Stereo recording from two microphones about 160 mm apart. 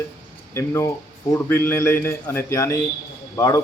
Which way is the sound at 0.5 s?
15° left (ahead or behind).